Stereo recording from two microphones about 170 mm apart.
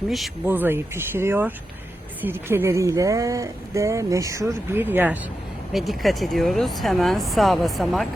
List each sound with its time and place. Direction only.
0.4 s speech: 10° right (ahead or behind)
5.7 s speech: centre (ahead or behind)